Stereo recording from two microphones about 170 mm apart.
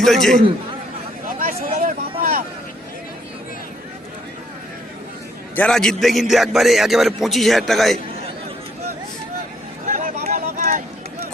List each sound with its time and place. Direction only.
0.0 s a man's voice: centre (ahead or behind)
1.4 s speech: 55° right (ahead or behind)
5.5 s a man's voice: 5° left (ahead or behind)
9.9 s a sound: 55° right (ahead or behind)